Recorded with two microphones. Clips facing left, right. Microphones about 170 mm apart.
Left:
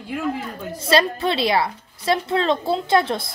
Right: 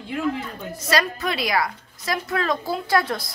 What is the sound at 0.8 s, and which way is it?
A woman's voice, 30° left (ahead or behind).